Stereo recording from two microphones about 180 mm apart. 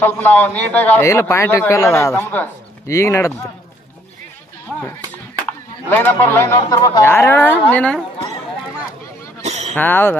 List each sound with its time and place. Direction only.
0.0 s a man's voice: 10° left (ahead or behind)
5.9 s a man's voice: 10° left (ahead or behind)
9.4 s a sound: 40° right (ahead or behind)
9.8 s a man's voice: 10° left (ahead or behind)